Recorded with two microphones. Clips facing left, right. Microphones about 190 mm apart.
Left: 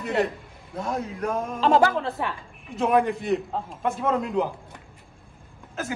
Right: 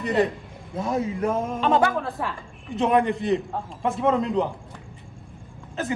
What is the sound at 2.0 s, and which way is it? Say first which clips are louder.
A man's voice: left 1 dB; centre (ahead or behind).